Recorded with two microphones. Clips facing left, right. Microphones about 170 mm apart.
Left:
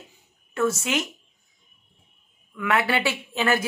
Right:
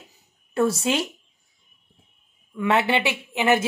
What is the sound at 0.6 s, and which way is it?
Speech, 35° right (ahead or behind).